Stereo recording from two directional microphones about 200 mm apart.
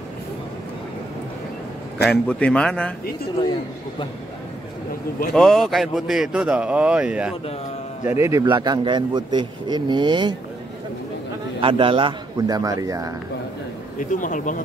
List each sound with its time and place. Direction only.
2.0 s speech: 5° left (ahead or behind)
5.3 s a man's voice: centre (ahead or behind); by 10.3 s 20° right (ahead or behind)
11.6 s a man's voice: 25° right (ahead or behind)
13.9 s speech: 40° left (ahead or behind)